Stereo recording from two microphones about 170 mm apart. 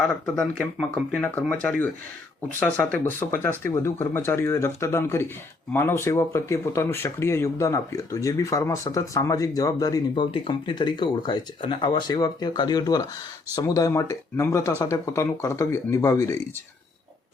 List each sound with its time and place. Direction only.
0.6 s speech: 5° left (ahead or behind)
2.6 s speech: 10° left (ahead or behind)